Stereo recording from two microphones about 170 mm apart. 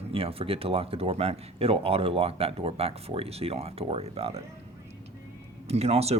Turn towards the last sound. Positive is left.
turn(degrees=-35)  # may be behind; listen again after turning